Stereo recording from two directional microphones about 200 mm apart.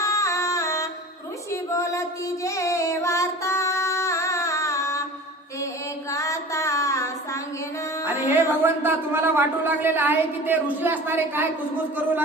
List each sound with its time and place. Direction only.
0.0 s music: 15° left (ahead or behind)
1.5 s female singing: 15° left (ahead or behind)
5.6 s mantra: 15° left (ahead or behind)
8.3 s speech: 10° right (ahead or behind)